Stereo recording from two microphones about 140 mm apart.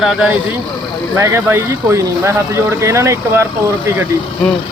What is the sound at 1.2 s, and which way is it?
Speech, 20° right (ahead or behind).